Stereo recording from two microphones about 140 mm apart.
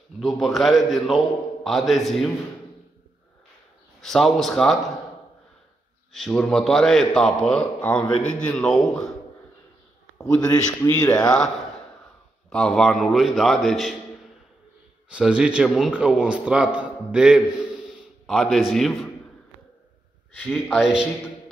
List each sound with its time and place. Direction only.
0.2 s a man's voice: centre (ahead or behind)
4.0 s a man's voice: centre (ahead or behind)
6.1 s a man's voice: 5° left (ahead or behind)
10.1 s a man's voice: 25° left (ahead or behind)
11.2 s a man's voice: 5° left (ahead or behind)
15.0 s a man's voice: 5° right (ahead or behind)
20.4 s a man's voice: 10° left (ahead or behind)
20.8 s a man's voice: 5° right (ahead or behind)